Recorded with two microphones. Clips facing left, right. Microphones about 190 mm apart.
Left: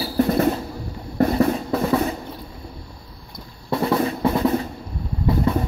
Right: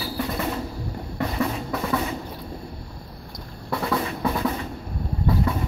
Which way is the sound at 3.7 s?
25° left (ahead or behind).